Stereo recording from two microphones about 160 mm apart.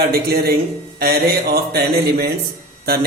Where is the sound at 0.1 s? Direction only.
75° right (ahead or behind).